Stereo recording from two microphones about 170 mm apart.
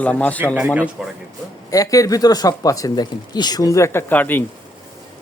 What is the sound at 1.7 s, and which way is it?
Speech, 20° left (ahead or behind).